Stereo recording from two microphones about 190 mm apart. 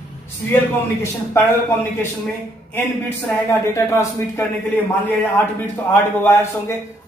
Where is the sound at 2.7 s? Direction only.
10° left (ahead or behind).